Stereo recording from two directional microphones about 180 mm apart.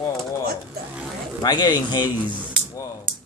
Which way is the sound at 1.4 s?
20° left (ahead or behind).